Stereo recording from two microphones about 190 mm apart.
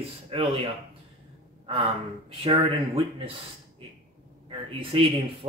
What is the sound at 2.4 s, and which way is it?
Speech, 30° right (ahead or behind).